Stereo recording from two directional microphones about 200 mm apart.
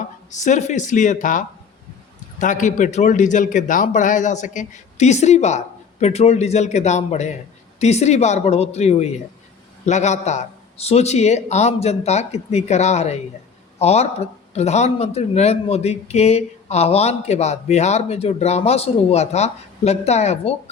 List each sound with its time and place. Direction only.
0.3 s a man's voice: 35° left (ahead or behind)